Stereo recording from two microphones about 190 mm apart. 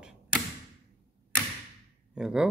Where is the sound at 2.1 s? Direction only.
5° right (ahead or behind).